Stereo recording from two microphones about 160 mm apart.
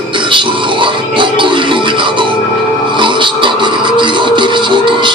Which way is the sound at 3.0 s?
30° right (ahead or behind).